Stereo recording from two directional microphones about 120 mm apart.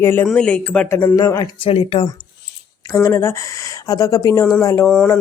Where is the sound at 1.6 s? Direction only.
50° left (ahead or behind).